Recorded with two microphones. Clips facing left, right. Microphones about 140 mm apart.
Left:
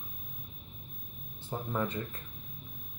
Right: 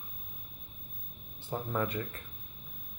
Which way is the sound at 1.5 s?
5° left (ahead or behind).